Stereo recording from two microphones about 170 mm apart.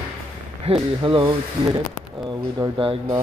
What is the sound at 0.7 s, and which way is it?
Speech, 30° right (ahead or behind).